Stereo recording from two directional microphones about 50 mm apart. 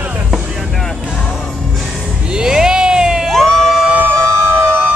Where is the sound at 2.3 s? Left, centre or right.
Centre.